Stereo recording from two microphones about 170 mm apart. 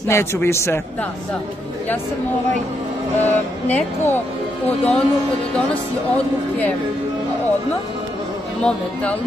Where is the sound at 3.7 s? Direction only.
10° left (ahead or behind).